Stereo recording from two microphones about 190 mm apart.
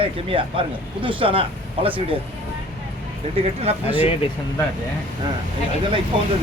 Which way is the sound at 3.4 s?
30° right (ahead or behind).